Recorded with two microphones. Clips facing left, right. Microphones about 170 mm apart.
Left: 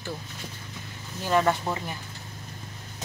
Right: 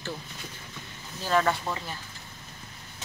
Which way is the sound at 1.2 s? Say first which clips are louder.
Left 2 dB; 15° left (ahead or behind).